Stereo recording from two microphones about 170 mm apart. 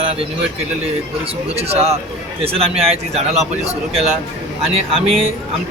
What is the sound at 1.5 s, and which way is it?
A man's voice, 35° right (ahead or behind).